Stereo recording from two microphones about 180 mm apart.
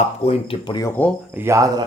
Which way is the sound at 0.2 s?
35° left (ahead or behind).